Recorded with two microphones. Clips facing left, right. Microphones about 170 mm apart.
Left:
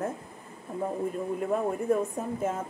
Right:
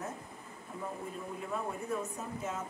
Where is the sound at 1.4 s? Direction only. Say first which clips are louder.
Left 9 dB; 50° left (ahead or behind).